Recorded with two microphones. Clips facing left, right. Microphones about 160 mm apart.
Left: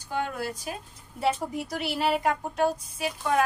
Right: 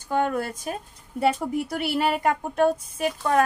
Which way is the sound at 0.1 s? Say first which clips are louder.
Right 6 dB; 50° right (ahead or behind).